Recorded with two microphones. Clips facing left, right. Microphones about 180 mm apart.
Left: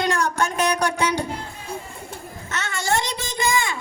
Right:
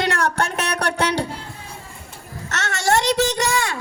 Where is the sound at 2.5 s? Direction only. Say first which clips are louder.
Right 4 dB; 75° right (ahead or behind).